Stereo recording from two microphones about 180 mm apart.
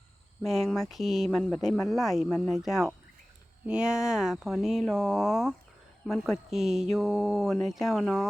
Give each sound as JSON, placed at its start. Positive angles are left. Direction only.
{"t": 0.4, "sound": "speech", "side_deg": 0}